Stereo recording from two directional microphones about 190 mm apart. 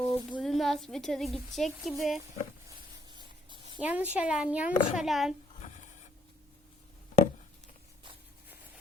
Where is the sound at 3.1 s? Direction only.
25° right (ahead or behind).